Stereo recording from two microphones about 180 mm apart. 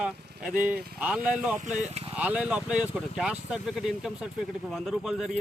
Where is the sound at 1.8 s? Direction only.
35° right (ahead or behind).